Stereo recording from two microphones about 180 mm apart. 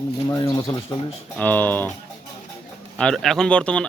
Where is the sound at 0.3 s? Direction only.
20° left (ahead or behind).